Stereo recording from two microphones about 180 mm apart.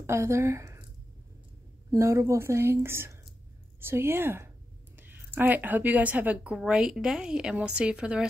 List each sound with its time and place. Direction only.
0.0 s speech: 15° right (ahead or behind)
1.9 s a woman's voice: 15° right (ahead or behind)